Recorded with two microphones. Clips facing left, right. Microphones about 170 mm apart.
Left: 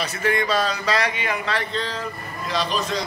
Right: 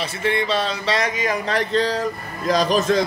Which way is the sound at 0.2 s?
25° right (ahead or behind).